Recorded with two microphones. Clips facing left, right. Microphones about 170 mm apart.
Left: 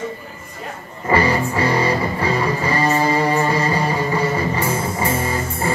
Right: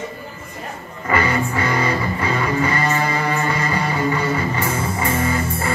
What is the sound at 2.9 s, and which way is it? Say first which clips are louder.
Music: left 4 dB; 30° left (ahead or behind).